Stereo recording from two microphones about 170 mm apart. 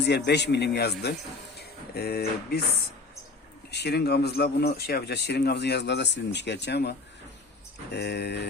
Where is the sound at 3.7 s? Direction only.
70° left (ahead or behind).